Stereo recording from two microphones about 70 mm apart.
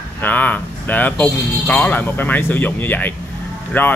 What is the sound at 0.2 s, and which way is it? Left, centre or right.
Speech, left.